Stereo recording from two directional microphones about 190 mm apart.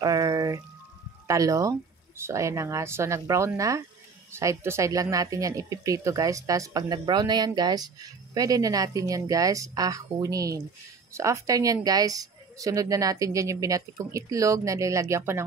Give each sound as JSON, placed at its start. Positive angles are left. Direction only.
{"t": 0.0, "sound": "pour", "side_deg": -20}
{"t": 1.2, "sound": "a woman's voice", "side_deg": -15}